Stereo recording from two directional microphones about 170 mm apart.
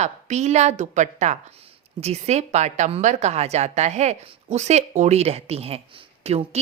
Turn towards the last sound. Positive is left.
turn(degrees=-40)  # may be behind; listen again after turning